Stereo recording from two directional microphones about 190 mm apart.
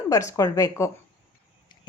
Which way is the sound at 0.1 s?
15° left (ahead or behind).